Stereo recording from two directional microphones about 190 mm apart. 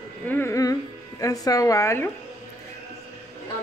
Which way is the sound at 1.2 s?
20° left (ahead or behind).